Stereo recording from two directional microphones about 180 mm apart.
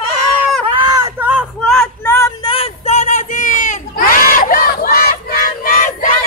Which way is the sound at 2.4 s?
30° left (ahead or behind).